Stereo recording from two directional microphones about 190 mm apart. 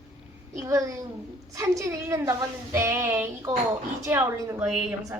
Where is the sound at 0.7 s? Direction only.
15° right (ahead or behind).